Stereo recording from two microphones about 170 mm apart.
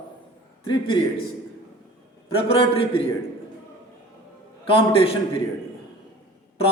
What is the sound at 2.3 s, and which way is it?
Speech, 35° left (ahead or behind).